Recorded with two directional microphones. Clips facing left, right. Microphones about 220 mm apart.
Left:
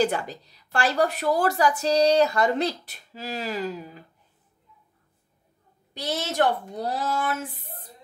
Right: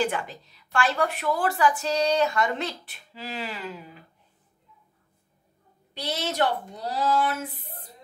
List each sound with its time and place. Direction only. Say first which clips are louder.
0.0 s a woman's voice: left 3 dB; 40° left (ahead or behind)
5.9 s a woman's voice: left 2 dB; 50° left (ahead or behind)
7.5 s a sound: left 1 dB; 45° left (ahead or behind)